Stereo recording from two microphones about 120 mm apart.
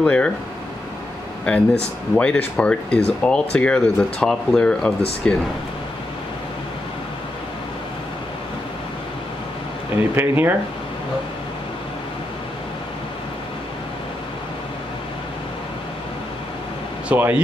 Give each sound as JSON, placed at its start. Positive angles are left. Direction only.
{"t": 0.0, "sound": "speech", "side_deg": 10}
{"t": 1.5, "sound": "speech", "side_deg": 10}
{"t": 10.1, "sound": "speech", "side_deg": -20}
{"t": 17.1, "sound": "speech", "side_deg": -15}